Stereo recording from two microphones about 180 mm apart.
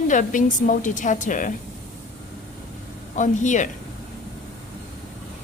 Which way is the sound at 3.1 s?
45° left (ahead or behind).